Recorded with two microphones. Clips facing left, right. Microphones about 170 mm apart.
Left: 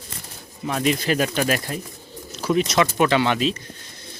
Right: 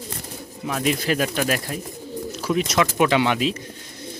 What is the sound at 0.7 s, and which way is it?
Speech, 5° right (ahead or behind).